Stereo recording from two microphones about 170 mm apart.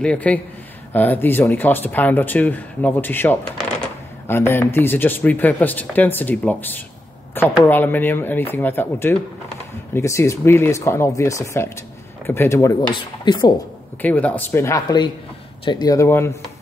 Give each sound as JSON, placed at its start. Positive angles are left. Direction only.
{"t": 0.0, "sound": "speech", "side_deg": 5}
{"t": 12.9, "sound": "speech", "side_deg": 25}
{"t": 14.0, "sound": "speech", "side_deg": 10}